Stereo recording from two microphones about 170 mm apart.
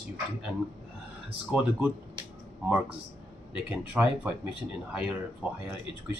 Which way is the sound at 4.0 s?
10° right (ahead or behind).